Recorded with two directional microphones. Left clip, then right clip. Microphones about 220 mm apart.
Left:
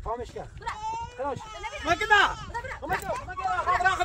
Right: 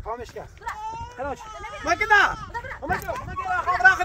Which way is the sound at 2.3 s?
45° left (ahead or behind).